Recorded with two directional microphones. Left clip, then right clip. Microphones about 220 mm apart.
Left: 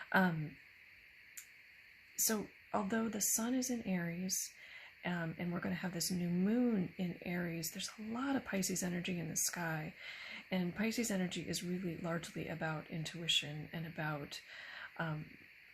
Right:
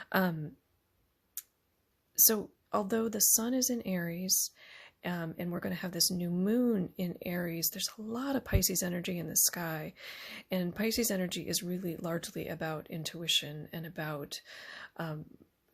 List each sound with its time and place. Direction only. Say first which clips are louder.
0.0 s speech: right 2 dB; 45° right (ahead or behind)
2.1 s a woman's voice: right 8 dB; 45° right (ahead or behind)